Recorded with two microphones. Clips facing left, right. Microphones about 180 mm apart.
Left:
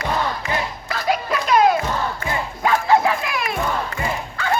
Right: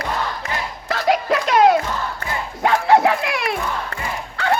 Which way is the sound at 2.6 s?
70° right (ahead or behind).